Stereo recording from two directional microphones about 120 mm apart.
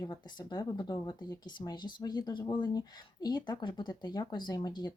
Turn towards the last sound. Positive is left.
turn(degrees=35)  # may be behind; listen again after turning